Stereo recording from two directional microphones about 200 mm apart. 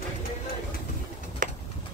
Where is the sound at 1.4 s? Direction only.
40° right (ahead or behind).